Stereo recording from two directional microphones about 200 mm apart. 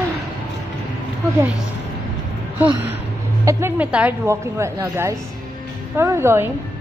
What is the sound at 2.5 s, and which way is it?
A woman's voice, 10° right (ahead or behind).